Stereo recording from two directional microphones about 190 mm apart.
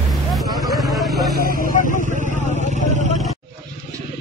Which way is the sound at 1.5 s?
45° left (ahead or behind).